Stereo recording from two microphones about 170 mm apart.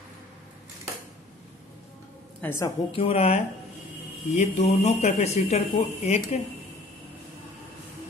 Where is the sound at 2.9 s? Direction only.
35° left (ahead or behind).